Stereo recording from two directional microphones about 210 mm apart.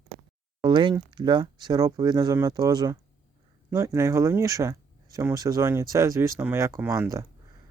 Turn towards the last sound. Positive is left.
turn(degrees=-15)  # may be behind; listen again after turning